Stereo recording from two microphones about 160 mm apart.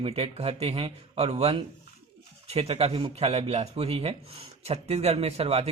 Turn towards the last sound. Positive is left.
turn(degrees=-40)  # may be behind; listen again after turning